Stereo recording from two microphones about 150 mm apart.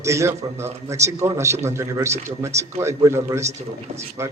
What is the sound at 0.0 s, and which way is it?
A man's voice, 20° right (ahead or behind).